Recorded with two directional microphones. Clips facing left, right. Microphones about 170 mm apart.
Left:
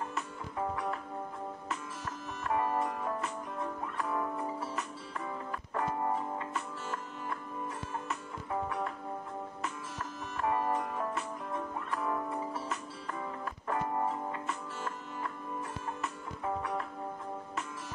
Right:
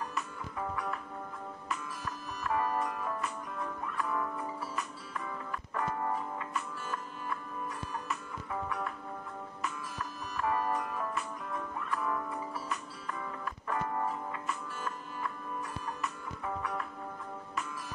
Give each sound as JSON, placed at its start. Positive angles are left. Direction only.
{"t": 0.1, "sound": "music", "side_deg": 25}
{"t": 2.4, "sound": "music", "side_deg": 25}
{"t": 8.6, "sound": "music", "side_deg": 25}
{"t": 10.3, "sound": "music", "side_deg": 25}
{"t": 13.7, "sound": "music", "side_deg": 15}
{"t": 16.0, "sound": "music", "side_deg": 25}